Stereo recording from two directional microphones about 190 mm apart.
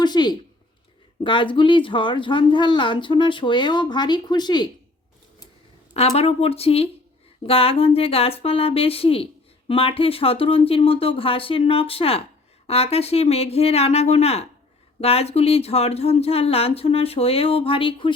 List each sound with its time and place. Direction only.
0.0 s a woman's voice: 20° left (ahead or behind)
5.9 s a woman's voice: 30° left (ahead or behind)